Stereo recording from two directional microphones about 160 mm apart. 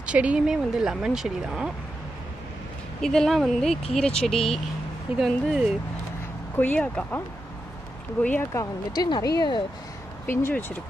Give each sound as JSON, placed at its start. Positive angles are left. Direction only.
{"t": 0.0, "sound": "speech", "side_deg": -10}
{"t": 3.0, "sound": "speech", "side_deg": 5}
{"t": 6.5, "sound": "speech", "side_deg": 10}
{"t": 8.9, "sound": "speech", "side_deg": 25}
{"t": 10.2, "sound": "speech", "side_deg": 15}